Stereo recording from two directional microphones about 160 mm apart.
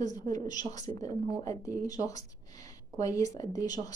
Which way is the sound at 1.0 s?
20° left (ahead or behind).